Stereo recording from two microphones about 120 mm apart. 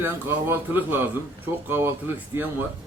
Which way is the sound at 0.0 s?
20° right (ahead or behind).